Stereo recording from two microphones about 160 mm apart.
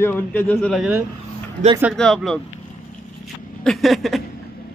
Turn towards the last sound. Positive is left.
turn(degrees=0)  # may be behind; listen again after turning